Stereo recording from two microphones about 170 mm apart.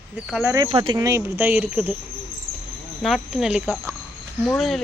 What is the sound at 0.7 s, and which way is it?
Speech, 30° right (ahead or behind).